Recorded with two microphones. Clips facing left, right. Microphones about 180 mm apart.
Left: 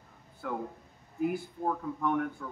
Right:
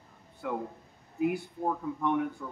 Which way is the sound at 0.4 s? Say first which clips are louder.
Right 2 dB; 5° right (ahead or behind).